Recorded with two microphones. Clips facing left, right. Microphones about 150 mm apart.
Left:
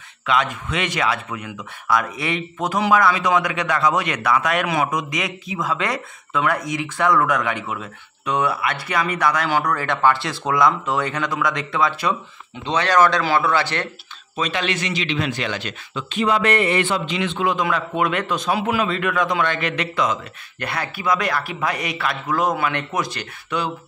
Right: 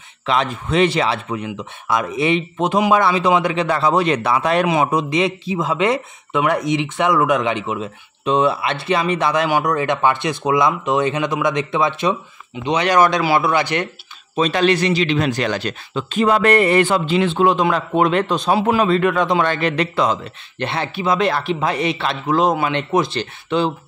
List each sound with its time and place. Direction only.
0.3 s speech: 30° right (ahead or behind); by 13.8 s 15° right (ahead or behind)
14.3 s speech: 35° right (ahead or behind)